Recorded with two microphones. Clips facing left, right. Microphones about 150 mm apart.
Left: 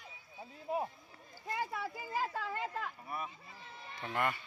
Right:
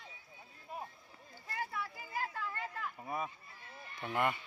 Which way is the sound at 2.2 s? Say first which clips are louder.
Left 2 dB; 90° left.